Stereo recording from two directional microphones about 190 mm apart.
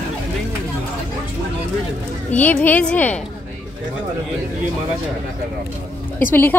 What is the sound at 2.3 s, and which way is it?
Speech, 10° left (ahead or behind).